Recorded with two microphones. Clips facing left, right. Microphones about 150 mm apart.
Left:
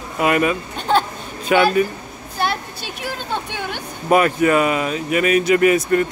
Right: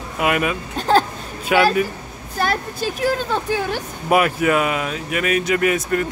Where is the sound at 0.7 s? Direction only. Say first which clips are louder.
Right 3 dB; 40° right (ahead or behind).